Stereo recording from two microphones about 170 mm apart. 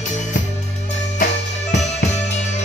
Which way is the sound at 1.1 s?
45° left (ahead or behind).